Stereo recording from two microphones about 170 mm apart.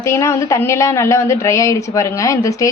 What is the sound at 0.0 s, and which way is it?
A woman's voice, 15° left (ahead or behind).